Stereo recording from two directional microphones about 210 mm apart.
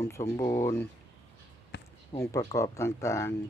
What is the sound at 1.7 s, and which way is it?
Basketball bounce, 55° left (ahead or behind).